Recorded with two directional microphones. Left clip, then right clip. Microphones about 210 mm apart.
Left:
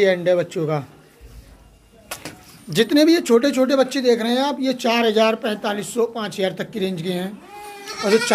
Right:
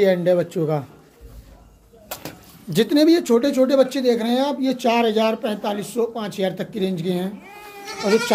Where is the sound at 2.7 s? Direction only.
5° right (ahead or behind).